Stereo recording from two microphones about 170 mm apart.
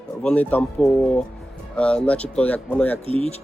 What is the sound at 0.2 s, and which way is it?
Speech, 5° left (ahead or behind).